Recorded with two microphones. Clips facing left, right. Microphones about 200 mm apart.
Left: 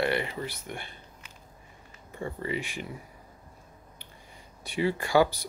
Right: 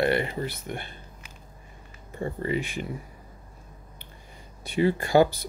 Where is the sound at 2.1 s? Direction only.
40° right (ahead or behind).